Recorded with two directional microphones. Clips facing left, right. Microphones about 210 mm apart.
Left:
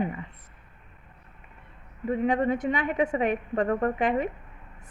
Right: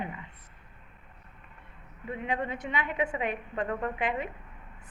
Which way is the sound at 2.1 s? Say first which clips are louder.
Left 9 dB; 40° left (ahead or behind).